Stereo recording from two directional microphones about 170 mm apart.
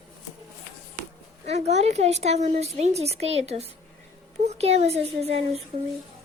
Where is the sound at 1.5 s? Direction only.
40° right (ahead or behind).